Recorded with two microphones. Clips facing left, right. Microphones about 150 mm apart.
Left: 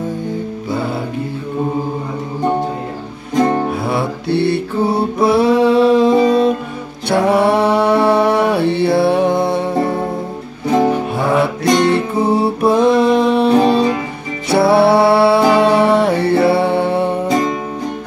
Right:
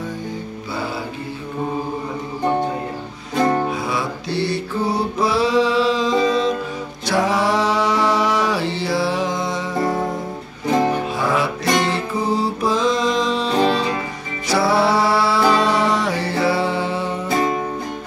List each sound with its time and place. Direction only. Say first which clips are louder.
3.8 s mantra: left 5 dB; 60° left (ahead or behind)
7.1 s music: left 6 dB; 60° left (ahead or behind)
11.1 s music: left 5 dB; 60° left (ahead or behind)